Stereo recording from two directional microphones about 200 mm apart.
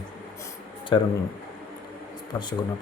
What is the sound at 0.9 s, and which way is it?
Speech, 25° left (ahead or behind).